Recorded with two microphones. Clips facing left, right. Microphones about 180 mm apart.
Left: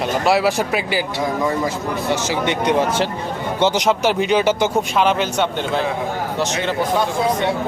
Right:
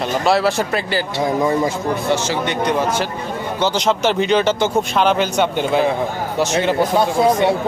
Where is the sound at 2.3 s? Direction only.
20° left (ahead or behind).